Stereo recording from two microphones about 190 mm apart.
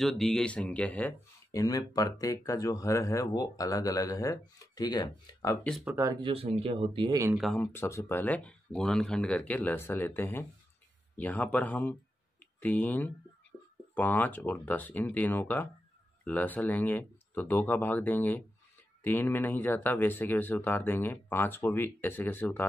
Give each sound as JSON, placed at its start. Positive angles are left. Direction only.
{"t": 0.0, "sound": "speech", "side_deg": 5}
{"t": 5.7, "sound": "speech", "side_deg": 0}
{"t": 5.9, "sound": "speech", "side_deg": -15}
{"t": 6.3, "sound": "speech", "side_deg": -30}
{"t": 7.3, "sound": "speech", "side_deg": 5}